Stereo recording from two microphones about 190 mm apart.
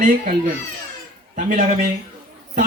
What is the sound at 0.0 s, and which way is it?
Speech, 45° right (ahead or behind).